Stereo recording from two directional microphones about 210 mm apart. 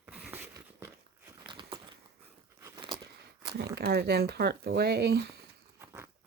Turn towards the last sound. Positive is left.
turn(degrees=-10)  # may be behind; listen again after turning